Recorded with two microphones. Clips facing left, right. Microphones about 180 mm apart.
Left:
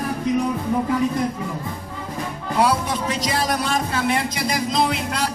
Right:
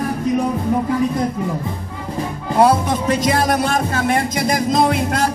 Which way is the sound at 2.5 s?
50° right (ahead or behind).